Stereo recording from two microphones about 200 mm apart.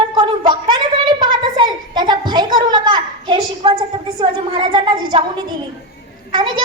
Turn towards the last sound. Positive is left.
turn(degrees=-25)  # may be behind; listen again after turning